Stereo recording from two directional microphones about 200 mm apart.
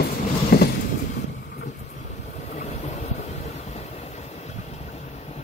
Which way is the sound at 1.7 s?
35° left (ahead or behind).